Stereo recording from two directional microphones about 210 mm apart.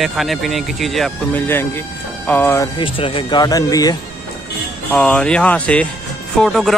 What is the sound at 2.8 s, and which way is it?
Speech, 25° left (ahead or behind).